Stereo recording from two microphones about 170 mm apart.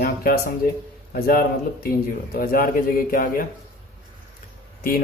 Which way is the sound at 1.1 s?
60° left (ahead or behind).